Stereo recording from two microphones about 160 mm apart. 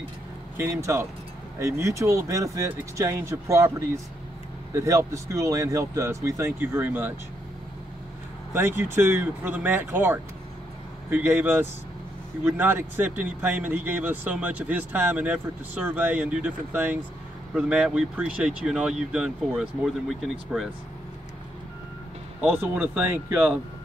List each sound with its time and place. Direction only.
0.6 s speech: 15° right (ahead or behind)
8.5 s speech: 15° right (ahead or behind)
22.4 s speech: 10° right (ahead or behind)